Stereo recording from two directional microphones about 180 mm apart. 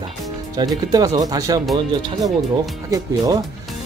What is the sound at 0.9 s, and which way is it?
Speech, 20° right (ahead or behind).